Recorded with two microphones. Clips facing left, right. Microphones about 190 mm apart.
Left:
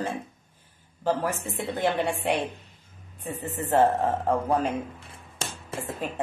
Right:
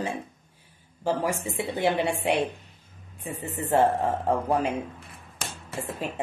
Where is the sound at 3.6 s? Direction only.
45° left (ahead or behind).